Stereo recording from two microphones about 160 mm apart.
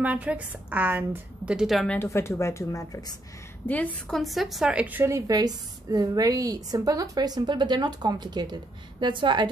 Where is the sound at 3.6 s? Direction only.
10° left (ahead or behind).